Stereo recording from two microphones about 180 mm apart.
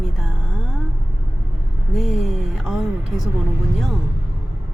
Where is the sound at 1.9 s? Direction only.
Centre (ahead or behind).